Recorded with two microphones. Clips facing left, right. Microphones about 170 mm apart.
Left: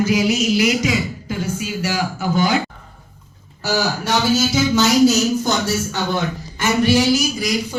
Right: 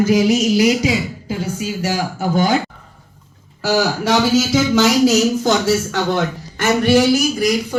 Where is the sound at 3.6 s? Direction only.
90° right.